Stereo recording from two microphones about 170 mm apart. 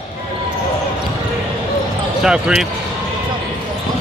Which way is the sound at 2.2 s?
5° right (ahead or behind).